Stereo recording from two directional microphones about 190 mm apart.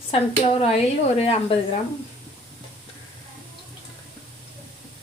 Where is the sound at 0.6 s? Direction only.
35° left (ahead or behind).